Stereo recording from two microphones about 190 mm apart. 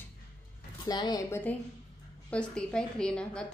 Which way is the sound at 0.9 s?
20° left (ahead or behind).